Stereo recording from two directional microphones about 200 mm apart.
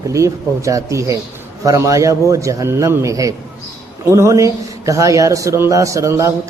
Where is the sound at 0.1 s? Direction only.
15° right (ahead or behind).